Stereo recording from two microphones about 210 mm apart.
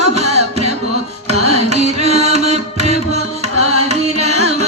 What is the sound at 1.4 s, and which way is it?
Music, 30° right (ahead or behind).